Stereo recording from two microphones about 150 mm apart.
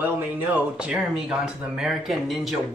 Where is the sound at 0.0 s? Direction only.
10° right (ahead or behind).